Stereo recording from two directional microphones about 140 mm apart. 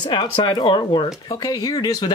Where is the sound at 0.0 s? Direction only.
35° left (ahead or behind).